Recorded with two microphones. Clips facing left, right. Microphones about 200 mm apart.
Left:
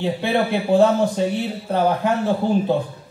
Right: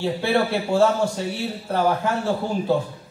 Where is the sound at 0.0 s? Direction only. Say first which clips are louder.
Left 1 dB; 20° left (ahead or behind).